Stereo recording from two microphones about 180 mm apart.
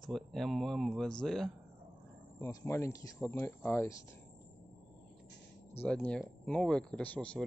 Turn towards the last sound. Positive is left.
turn(degrees=5)  # may be behind; listen again after turning